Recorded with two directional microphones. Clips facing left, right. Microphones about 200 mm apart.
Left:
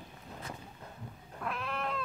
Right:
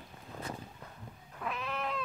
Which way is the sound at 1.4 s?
Centre (ahead or behind).